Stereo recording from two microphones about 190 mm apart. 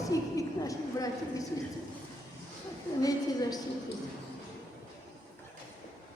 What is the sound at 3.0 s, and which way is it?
Speech, 20° left (ahead or behind).